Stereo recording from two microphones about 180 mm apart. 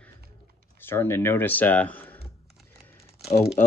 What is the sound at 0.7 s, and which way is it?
Speech, 15° left (ahead or behind).